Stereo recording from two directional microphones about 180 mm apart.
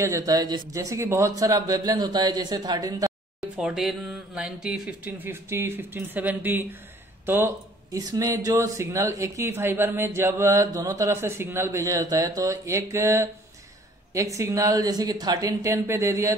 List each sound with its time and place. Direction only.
0.0 s speech: 20° right (ahead or behind)
3.3 s speech: 5° right (ahead or behind)